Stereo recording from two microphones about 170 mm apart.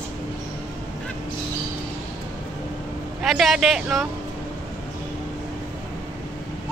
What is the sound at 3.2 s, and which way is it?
Speech, 5° right (ahead or behind).